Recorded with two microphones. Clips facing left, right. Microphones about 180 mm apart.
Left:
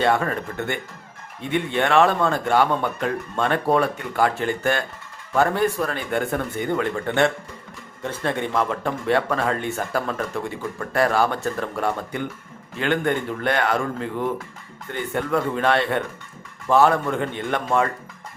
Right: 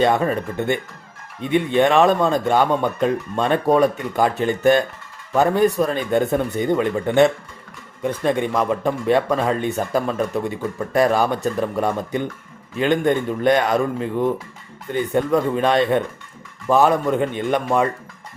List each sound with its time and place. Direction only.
0.0 s speech: 20° right (ahead or behind)